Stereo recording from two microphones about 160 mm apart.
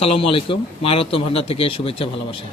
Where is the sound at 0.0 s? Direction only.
35° left (ahead or behind).